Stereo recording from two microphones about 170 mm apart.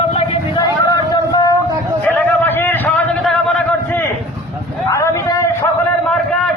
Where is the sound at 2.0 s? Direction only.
10° left (ahead or behind).